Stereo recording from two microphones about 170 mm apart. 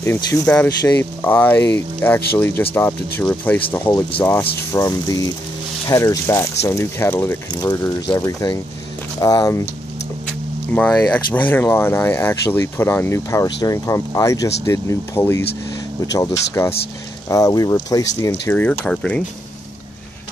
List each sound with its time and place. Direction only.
0.0 s speech: 15° left (ahead or behind)
10.7 s speech: 10° left (ahead or behind)